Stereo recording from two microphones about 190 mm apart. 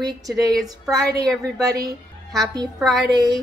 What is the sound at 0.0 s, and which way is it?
A woman's voice, 20° right (ahead or behind).